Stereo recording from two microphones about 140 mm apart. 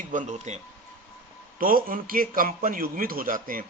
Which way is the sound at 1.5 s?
80° right.